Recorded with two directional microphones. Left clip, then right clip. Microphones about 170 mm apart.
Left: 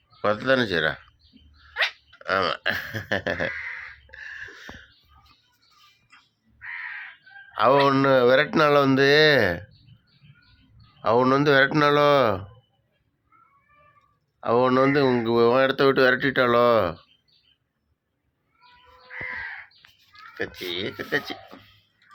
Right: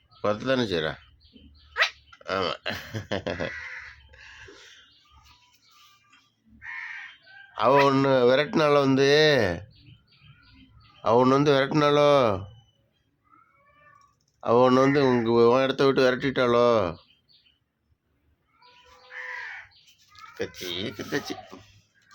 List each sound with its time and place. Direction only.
0.2 s speech: 5° right (ahead or behind)
2.2 s speech: 5° right (ahead or behind)
4.1 s a sound: 5° right (ahead or behind)
7.5 s speech: 5° right (ahead or behind)
11.0 s speech: 15° right (ahead or behind)
14.4 s speech: 20° right (ahead or behind)
14.9 s speech: 10° right (ahead or behind)
20.1 s speech: centre (ahead or behind)